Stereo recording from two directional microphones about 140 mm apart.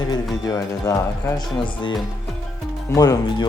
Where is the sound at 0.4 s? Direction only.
30° left (ahead or behind).